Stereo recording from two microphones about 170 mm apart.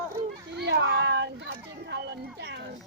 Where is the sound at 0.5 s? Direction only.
85° right.